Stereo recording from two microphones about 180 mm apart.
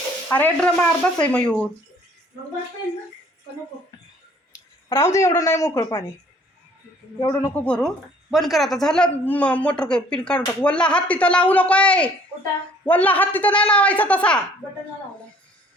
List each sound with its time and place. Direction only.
0.3 s a woman's voice: 10° left (ahead or behind)
4.9 s a woman's voice: 15° left (ahead or behind)
7.2 s speech: 20° left (ahead or behind)
7.6 s a woman's voice: 5° left (ahead or behind)